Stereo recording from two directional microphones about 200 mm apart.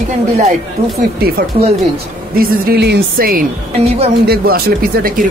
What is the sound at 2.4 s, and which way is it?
Speech, 45° right (ahead or behind).